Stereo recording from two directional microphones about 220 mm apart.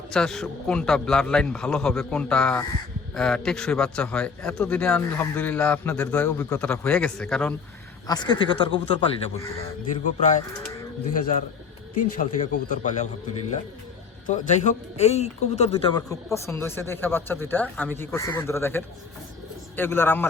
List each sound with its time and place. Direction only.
0.1 s a man's voice: 5° left (ahead or behind)
8.0 s speech: 20° left (ahead or behind)
10.0 s speech: 35° left (ahead or behind)
11.9 s speech: 35° left (ahead or behind)
14.3 s speech: 35° left (ahead or behind)
16.0 s speech: 15° left (ahead or behind)